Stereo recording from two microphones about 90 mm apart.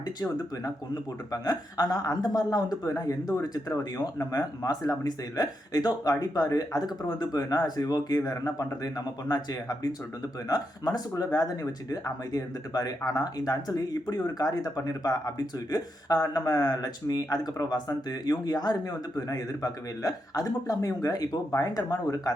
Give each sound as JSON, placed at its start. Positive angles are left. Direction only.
{"t": 1.3, "sound": "speech", "side_deg": 45}